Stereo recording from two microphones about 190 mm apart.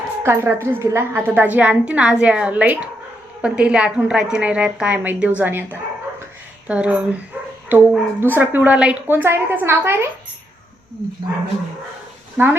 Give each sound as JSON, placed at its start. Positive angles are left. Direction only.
{"t": 0.2, "sound": "a woman's voice", "side_deg": -15}
{"t": 6.7, "sound": "a woman's voice", "side_deg": -5}
{"t": 12.4, "sound": "a woman's voice", "side_deg": -10}